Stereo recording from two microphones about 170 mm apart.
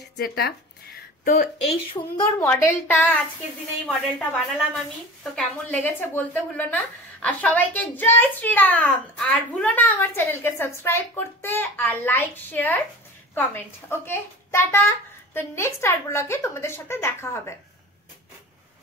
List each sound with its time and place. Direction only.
0.2 s speech: 65° left (ahead or behind)
1.2 s speech: 55° left (ahead or behind)
2.0 s a woman's voice: 20° left (ahead or behind)